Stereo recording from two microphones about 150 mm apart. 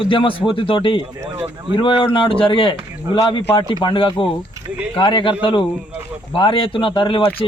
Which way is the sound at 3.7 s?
30° left (ahead or behind).